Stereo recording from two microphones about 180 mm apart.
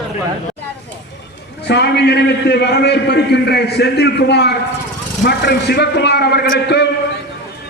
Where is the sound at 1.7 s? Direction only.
70° left (ahead or behind).